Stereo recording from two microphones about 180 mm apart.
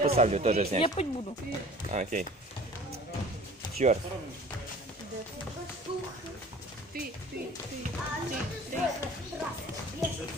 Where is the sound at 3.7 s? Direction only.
40° right (ahead or behind).